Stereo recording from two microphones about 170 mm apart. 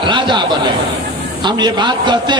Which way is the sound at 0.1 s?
30° right (ahead or behind).